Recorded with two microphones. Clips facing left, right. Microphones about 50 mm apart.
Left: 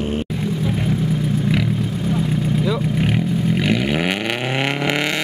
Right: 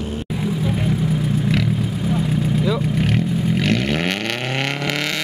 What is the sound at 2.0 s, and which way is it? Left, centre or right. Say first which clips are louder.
Vehicle: even; centre.